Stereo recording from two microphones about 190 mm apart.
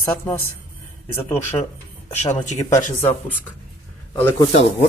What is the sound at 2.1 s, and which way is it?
Speech, 35° left (ahead or behind).